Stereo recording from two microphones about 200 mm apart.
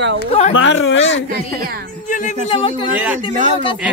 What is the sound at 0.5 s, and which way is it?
Speech, 70° left (ahead or behind).